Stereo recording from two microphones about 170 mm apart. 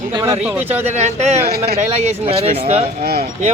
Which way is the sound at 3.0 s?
65° right (ahead or behind).